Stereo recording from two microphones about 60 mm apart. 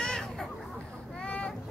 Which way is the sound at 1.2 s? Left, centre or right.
Centre.